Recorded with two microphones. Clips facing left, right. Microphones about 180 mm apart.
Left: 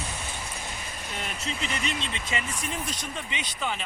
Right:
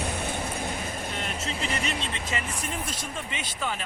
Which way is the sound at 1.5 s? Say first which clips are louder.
Even; 35° right (ahead or behind).